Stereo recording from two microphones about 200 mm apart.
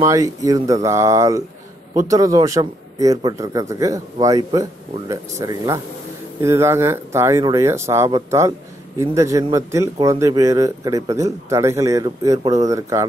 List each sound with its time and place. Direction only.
0.0 s a man's voice: 15° right (ahead or behind)